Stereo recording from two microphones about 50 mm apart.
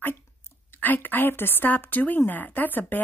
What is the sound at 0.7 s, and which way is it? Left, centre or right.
A woman's voice, left.